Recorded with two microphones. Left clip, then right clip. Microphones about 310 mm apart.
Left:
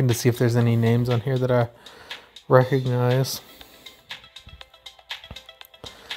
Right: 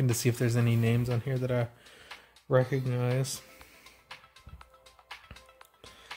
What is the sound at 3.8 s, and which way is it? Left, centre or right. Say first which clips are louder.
Music: left 11 dB; centre.